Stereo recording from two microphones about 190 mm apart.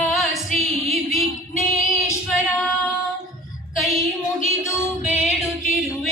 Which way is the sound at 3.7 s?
Centre (ahead or behind).